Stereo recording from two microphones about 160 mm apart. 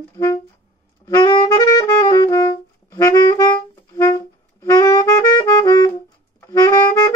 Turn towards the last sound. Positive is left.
turn(degrees=25)  # may be behind; listen again after turning